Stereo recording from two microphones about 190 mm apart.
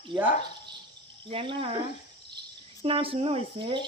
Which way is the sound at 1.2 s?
30° right (ahead or behind).